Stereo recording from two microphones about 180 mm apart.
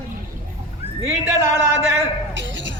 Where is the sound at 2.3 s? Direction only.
85° right.